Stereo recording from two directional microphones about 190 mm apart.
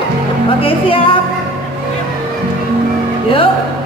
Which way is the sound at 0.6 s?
30° left (ahead or behind).